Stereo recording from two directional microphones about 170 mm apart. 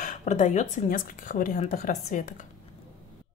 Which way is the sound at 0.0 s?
45° left (ahead or behind).